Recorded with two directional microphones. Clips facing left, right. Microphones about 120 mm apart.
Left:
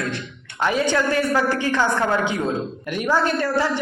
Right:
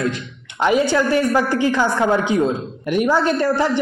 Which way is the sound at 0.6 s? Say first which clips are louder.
Right 4 dB; 15° right (ahead or behind).